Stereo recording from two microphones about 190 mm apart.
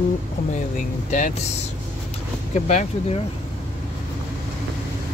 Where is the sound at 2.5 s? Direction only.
35° left (ahead or behind).